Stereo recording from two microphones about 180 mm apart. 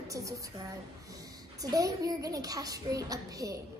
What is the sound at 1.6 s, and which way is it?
A child's voice, 20° right (ahead or behind).